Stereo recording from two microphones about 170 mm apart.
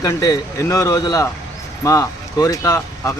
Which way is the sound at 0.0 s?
20° left (ahead or behind).